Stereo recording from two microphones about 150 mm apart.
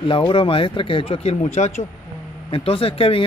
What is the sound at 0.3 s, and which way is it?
Speech, 35° left (ahead or behind).